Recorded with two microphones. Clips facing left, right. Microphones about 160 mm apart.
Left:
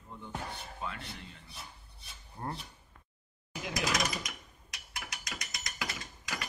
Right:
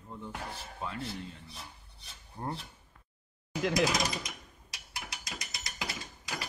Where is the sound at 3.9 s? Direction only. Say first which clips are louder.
Right 1 dB; 30° right (ahead or behind).